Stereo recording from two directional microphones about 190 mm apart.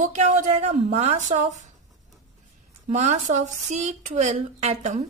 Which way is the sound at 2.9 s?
40° right (ahead or behind).